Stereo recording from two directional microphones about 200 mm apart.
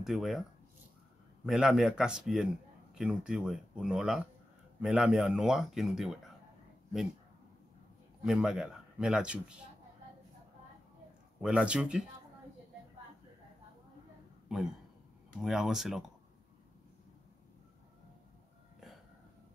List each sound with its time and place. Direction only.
0.0 s speech: centre (ahead or behind)
8.2 s speech: centre (ahead or behind)
11.4 s speech: 5° right (ahead or behind)
15.4 s speech: centre (ahead or behind)